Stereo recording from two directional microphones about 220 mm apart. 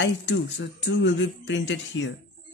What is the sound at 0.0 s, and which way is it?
Speech, 55° left (ahead or behind).